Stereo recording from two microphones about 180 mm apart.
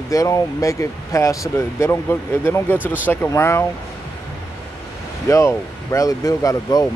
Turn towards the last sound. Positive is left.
turn(degrees=20)  # may be behind; listen again after turning